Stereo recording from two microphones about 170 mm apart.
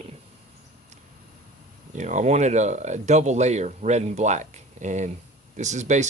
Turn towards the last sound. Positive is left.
turn(degrees=-45)  # may be behind; listen again after turning